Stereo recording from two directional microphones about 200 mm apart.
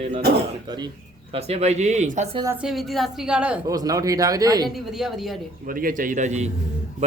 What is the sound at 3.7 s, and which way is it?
Speech, 20° right (ahead or behind).